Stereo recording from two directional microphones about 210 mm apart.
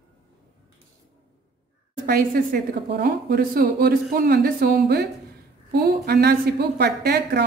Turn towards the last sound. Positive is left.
turn(degrees=-50)  # may be behind; listen again after turning